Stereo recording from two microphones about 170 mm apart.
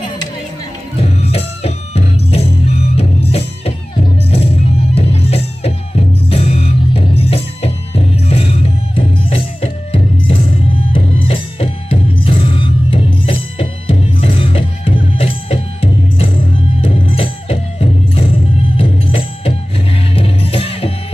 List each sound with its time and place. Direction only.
0.9 s music: 35° left (ahead or behind)